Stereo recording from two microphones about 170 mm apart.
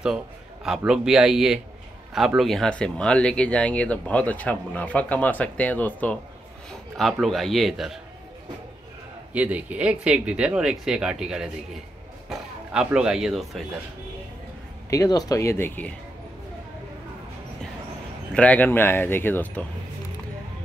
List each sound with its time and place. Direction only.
0.7 s speech: 5° right (ahead or behind)
9.3 s speech: 10° right (ahead or behind)
14.9 s speech: 20° left (ahead or behind)
18.3 s speech: 10° left (ahead or behind)